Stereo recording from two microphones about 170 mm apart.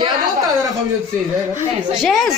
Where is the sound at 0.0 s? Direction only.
25° right (ahead or behind).